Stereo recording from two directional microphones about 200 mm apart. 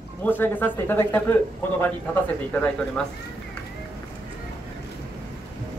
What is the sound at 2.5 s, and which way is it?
Speech, 5° left (ahead or behind).